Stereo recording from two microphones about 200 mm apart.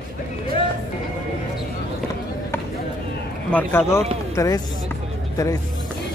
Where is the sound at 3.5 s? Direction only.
10° left (ahead or behind).